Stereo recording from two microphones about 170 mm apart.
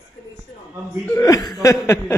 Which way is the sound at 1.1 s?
20° left (ahead or behind).